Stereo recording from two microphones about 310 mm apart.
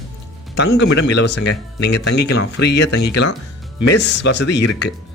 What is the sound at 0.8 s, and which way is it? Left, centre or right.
Speech, left.